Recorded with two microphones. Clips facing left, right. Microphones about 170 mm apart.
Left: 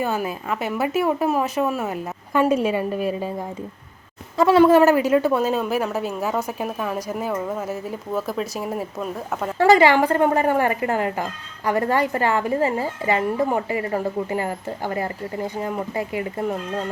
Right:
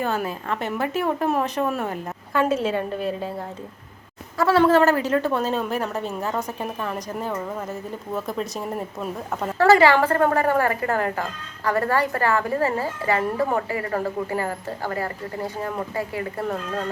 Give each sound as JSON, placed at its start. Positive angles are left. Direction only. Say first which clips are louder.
{"t": 0.0, "sound": "speech", "louder": "left 1 dB", "side_deg": 10}
{"t": 2.3, "sound": "speech", "louder": "left 3 dB", "side_deg": 15}
{"t": 4.4, "sound": "speech", "louder": "left 3 dB", "side_deg": 15}
{"t": 9.6, "sound": "speech", "louder": "left 1 dB", "side_deg": 15}